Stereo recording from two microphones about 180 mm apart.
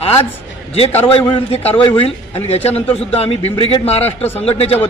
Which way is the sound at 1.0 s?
30° left (ahead or behind).